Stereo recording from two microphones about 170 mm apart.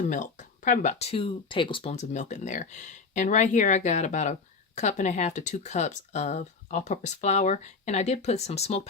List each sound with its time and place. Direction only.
0.1 s a woman's voice: 45° left (ahead or behind)